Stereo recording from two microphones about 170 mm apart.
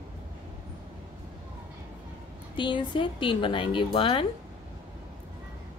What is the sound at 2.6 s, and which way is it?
Speech, 30° left (ahead or behind).